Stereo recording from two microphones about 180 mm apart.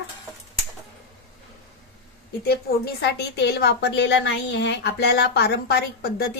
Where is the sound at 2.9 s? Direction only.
70° left (ahead or behind).